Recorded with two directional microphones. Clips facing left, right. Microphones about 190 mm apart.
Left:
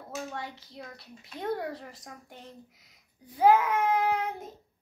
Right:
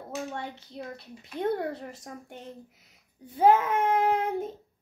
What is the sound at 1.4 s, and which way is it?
A child's voice, 25° right (ahead or behind).